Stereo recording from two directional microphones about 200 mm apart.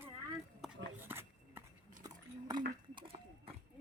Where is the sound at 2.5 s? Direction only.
20° right (ahead or behind).